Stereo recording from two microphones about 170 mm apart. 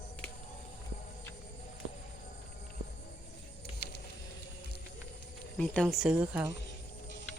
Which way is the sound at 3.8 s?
70° left (ahead or behind).